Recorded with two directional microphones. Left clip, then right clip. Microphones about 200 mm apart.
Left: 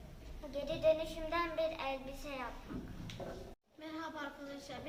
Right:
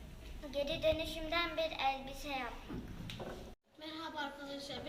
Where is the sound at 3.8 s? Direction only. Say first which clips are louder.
Right 1 dB; 15° left (ahead or behind).